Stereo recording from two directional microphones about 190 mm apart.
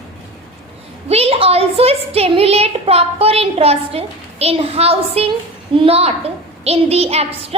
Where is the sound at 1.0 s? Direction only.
30° right (ahead or behind).